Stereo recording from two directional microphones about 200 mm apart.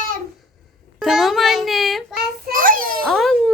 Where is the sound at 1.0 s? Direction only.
Centre (ahead or behind).